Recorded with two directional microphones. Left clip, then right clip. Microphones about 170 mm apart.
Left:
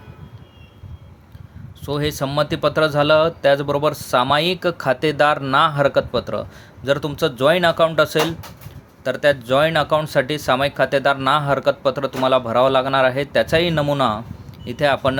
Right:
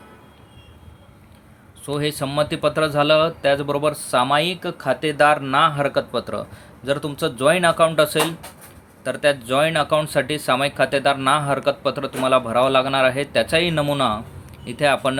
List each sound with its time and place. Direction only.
1.8 s speech: 15° left (ahead or behind)
4.4 s speech: 30° left (ahead or behind); by 15.2 s 10° left (ahead or behind)